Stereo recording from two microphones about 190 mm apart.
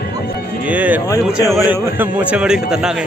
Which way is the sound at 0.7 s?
10° right (ahead or behind).